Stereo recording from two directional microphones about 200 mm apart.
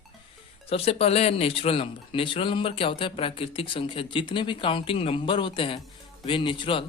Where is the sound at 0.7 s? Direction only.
30° left (ahead or behind).